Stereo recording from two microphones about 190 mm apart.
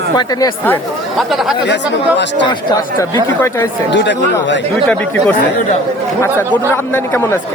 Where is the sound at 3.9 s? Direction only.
65° left (ahead or behind).